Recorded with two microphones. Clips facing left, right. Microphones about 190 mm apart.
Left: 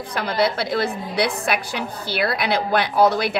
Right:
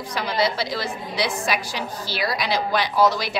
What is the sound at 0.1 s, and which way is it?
A woman's voice, 55° left (ahead or behind).